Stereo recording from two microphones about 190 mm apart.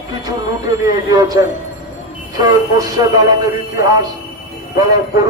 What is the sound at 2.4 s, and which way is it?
Speech, 20° right (ahead or behind).